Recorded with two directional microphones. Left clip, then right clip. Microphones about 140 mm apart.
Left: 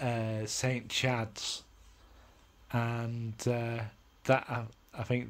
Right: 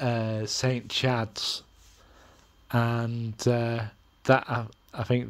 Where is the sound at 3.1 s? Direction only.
25° right (ahead or behind).